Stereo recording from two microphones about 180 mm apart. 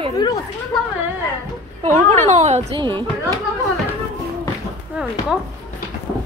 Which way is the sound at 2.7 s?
30° right (ahead or behind).